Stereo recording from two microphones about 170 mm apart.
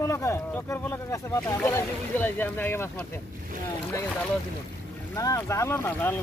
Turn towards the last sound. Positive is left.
turn(degrees=15)  # may be behind; listen again after turning